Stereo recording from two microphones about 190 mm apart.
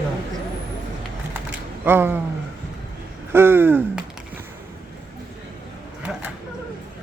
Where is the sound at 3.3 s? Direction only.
10° right (ahead or behind).